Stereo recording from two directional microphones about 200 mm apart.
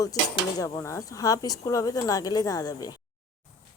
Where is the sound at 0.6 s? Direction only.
15° left (ahead or behind).